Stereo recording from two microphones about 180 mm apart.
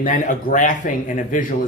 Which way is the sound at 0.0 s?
45° left (ahead or behind).